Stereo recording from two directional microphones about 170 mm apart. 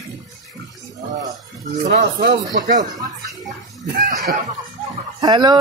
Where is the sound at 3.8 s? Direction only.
65° right (ahead or behind).